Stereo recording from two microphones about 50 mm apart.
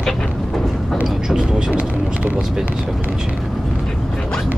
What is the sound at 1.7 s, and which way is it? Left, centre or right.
Vehicle, right.